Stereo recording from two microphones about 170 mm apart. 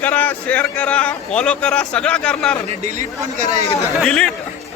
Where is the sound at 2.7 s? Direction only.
45° right (ahead or behind).